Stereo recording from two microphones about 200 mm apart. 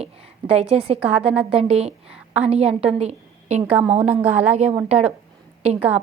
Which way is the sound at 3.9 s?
30° right (ahead or behind).